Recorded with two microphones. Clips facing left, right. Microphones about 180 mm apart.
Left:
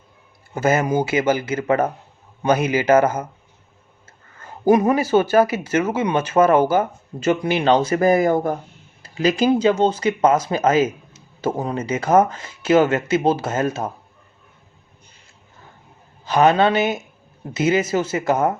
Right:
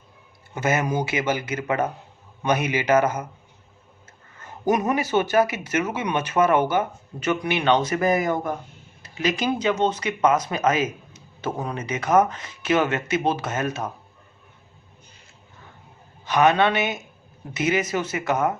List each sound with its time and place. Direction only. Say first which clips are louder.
0.5 s speech: left 5 dB; 30° left (ahead or behind)
4.4 s speech: left 6 dB; 30° left (ahead or behind)
16.2 s a man's voice: left 3 dB; 30° left (ahead or behind)